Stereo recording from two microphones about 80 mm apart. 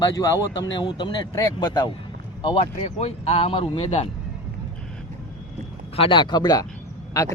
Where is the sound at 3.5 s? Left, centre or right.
Left.